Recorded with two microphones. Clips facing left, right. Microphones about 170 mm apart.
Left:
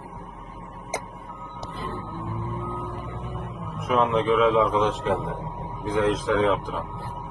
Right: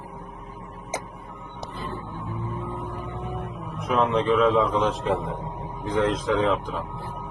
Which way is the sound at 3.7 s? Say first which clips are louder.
Even; centre (ahead or behind).